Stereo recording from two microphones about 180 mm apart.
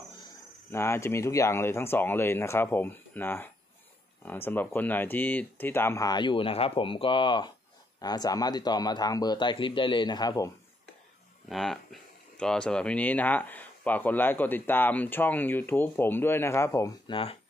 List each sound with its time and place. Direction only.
0.7 s speech: 15° left (ahead or behind)
11.4 s speech: centre (ahead or behind)
17.1 s speech: 30° left (ahead or behind)